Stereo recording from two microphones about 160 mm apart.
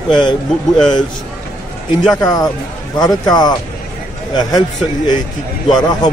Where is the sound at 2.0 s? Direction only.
25° left (ahead or behind).